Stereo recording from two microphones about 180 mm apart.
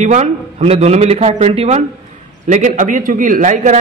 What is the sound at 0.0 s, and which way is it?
A man's voice, 40° right (ahead or behind).